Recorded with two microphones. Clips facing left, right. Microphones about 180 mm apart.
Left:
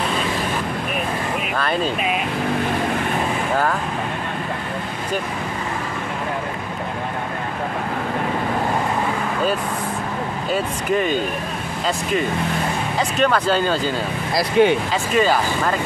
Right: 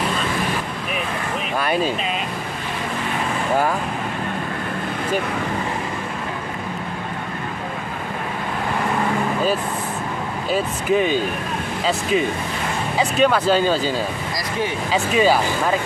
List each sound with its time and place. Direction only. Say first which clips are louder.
10.5 s speech: right 2 dB; centre (ahead or behind)
13.2 s speech: right 2 dB; 5° right (ahead or behind)
14.3 s speech: left 14 dB; 65° left (ahead or behind)
15.1 s speech: even; 5° right (ahead or behind)